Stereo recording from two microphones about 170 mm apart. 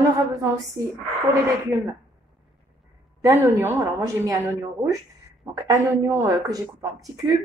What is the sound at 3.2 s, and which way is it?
A woman's voice, 15° right (ahead or behind).